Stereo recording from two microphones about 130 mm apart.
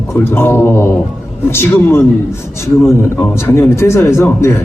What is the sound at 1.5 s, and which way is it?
Speech, 20° left (ahead or behind).